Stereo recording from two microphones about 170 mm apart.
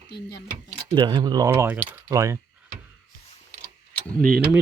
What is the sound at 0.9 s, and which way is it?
Speech, 25° right (ahead or behind).